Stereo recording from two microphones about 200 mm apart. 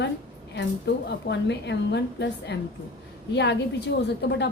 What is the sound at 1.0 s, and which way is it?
A woman's voice, 60° left (ahead or behind).